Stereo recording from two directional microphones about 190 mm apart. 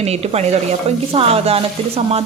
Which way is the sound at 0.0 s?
35° right (ahead or behind).